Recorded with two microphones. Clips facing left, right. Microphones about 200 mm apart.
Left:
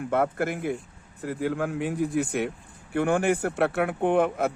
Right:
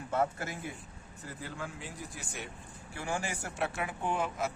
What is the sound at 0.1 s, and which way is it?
Speech, 60° left (ahead or behind).